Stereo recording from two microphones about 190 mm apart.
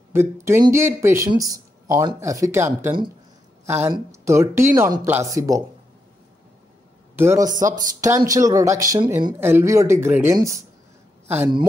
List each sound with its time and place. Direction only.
0.1 s speech: 15° right (ahead or behind)
7.2 s a woman's voice: 15° right (ahead or behind)